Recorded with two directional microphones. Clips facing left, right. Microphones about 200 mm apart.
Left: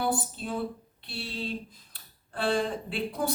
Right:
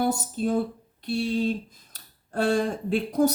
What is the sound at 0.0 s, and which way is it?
Speech, 45° right (ahead or behind).